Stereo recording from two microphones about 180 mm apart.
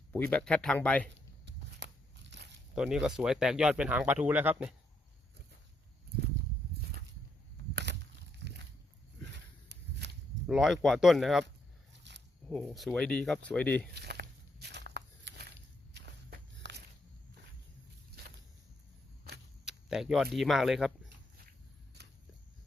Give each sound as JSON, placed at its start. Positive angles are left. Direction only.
{"t": 0.1, "sound": "speech", "side_deg": 10}
{"t": 1.8, "sound": "tearing", "side_deg": -75}
{"t": 2.3, "sound": "biting", "side_deg": -75}
{"t": 2.7, "sound": "speech", "side_deg": 0}
{"t": 7.7, "sound": "a sound", "side_deg": -70}
{"t": 9.3, "sound": "walk", "side_deg": -70}
{"t": 10.4, "sound": "speech", "side_deg": 0}
{"t": 12.1, "sound": "a sound", "side_deg": -75}
{"t": 12.5, "sound": "speech", "side_deg": 5}
{"t": 13.9, "sound": "walk", "side_deg": -65}
{"t": 19.6, "sound": "a sound", "side_deg": 0}
{"t": 20.3, "sound": "speech", "side_deg": 0}